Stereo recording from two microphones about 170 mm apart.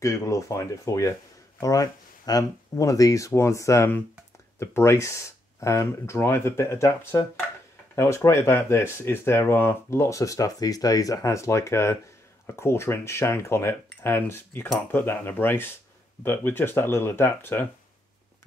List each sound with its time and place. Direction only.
0.0 s speech: 20° left (ahead or behind)